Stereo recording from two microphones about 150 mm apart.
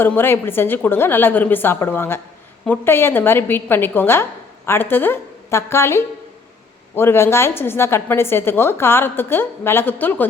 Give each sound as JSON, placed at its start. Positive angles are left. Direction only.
{"t": 0.0, "sound": "a woman's voice", "side_deg": 15}